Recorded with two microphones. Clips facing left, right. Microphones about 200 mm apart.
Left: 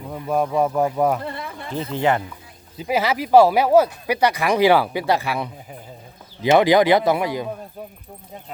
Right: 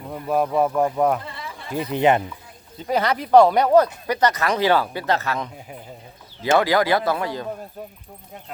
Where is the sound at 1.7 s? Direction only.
15° right (ahead or behind).